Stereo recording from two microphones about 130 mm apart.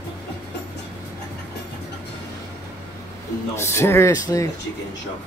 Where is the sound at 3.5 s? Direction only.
20° left (ahead or behind).